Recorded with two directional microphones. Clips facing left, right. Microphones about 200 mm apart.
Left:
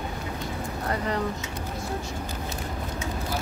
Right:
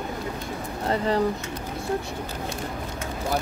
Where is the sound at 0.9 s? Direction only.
30° right (ahead or behind).